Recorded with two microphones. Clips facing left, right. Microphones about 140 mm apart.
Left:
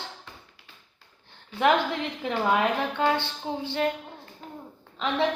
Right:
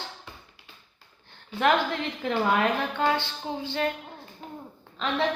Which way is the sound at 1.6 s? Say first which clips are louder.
Left 1 dB; 15° left (ahead or behind).